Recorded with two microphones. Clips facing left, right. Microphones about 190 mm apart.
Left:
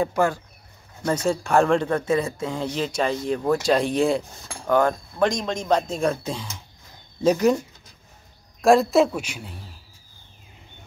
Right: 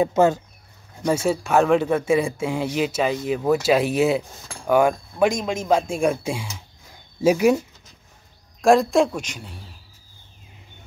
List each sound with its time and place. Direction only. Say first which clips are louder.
0.0 s speech: right 4 dB; 20° right (ahead or behind)
1.0 s speech: right 2 dB; 10° right (ahead or behind)
8.5 s speech: even; centre (ahead or behind)